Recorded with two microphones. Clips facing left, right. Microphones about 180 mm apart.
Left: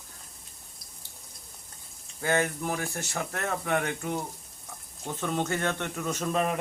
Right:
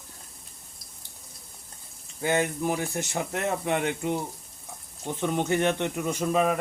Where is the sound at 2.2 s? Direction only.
20° right (ahead or behind).